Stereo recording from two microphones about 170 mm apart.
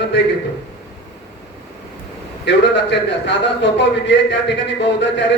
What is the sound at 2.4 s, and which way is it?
A man's voice, 90° left.